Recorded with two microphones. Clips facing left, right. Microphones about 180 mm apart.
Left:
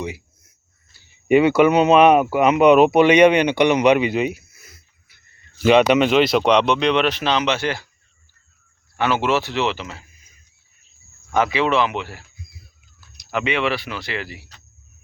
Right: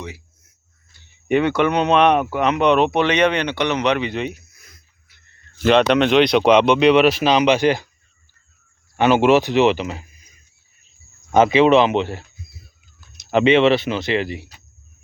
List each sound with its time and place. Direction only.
0.0 s a sound: 10° left (ahead or behind)
0.9 s speech: 10° left (ahead or behind); by 7.9 s 15° right (ahead or behind)
9.0 s speech: 20° right (ahead or behind)
11.3 s speech: 20° right (ahead or behind)